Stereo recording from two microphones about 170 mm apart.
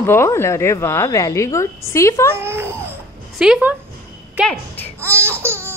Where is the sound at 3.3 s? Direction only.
5° right (ahead or behind).